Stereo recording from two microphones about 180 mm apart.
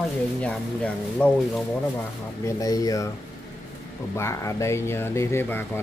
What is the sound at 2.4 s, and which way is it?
Speech, 20° left (ahead or behind).